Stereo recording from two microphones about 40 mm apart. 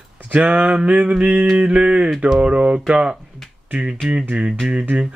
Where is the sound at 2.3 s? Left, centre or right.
Right.